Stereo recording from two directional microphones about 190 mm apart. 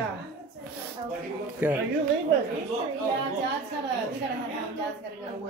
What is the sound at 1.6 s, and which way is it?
Speech, 10° right (ahead or behind).